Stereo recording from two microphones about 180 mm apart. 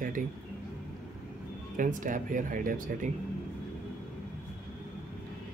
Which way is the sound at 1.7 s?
45° right (ahead or behind).